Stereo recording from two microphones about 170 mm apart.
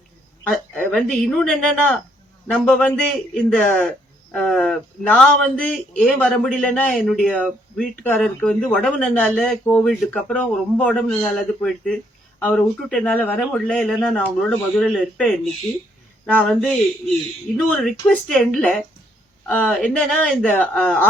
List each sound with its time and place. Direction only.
0.4 s a man's voice: 5° left (ahead or behind)